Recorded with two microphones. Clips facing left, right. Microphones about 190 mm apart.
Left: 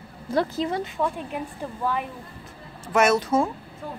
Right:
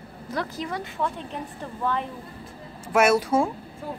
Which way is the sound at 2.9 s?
10° right (ahead or behind).